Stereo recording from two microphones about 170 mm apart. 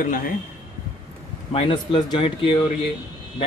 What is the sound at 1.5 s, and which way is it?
Speech, 35° left (ahead or behind).